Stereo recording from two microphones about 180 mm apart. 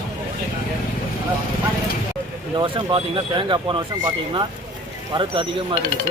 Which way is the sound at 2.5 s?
25° right (ahead or behind).